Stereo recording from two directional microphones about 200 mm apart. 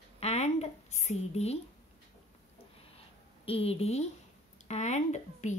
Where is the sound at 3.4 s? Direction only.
30° left (ahead or behind).